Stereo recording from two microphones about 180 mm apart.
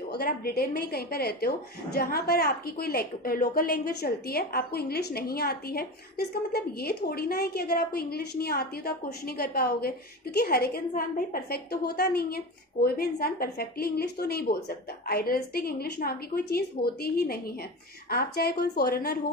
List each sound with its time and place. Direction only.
0.1 s a woman's voice: 55° left (ahead or behind)